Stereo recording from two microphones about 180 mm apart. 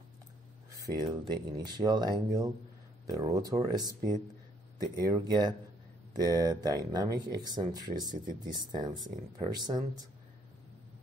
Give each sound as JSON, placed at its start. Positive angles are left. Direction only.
{"t": 0.7, "sound": "speech", "side_deg": -20}